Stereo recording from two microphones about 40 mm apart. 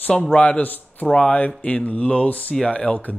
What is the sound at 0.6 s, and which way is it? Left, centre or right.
Speech, left.